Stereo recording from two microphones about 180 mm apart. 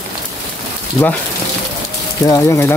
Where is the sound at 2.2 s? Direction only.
15° left (ahead or behind).